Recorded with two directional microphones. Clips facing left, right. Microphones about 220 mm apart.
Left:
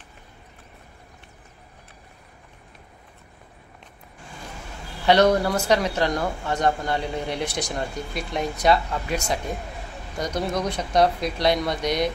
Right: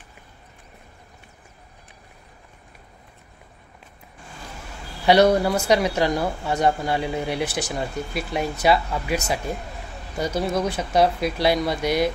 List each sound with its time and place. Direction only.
5.0 s speech: 10° right (ahead or behind)